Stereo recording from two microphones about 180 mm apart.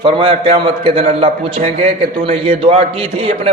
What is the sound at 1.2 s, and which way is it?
A man's voice, 40° right (ahead or behind).